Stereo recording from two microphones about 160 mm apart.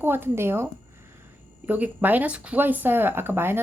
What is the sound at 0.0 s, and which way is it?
Speech, 15° right (ahead or behind).